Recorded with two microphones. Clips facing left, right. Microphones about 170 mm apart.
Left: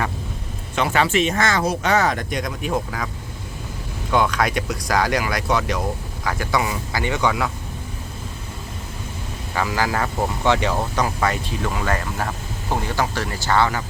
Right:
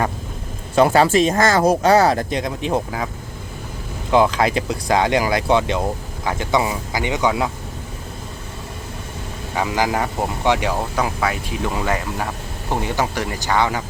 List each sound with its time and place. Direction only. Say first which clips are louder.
0.8 s speech: right 6 dB; 45° right (ahead or behind); by 3.1 s 25° right (ahead or behind)
4.1 s speech: right 4 dB; 30° right (ahead or behind)
9.6 s speech: right 2 dB; 20° right (ahead or behind)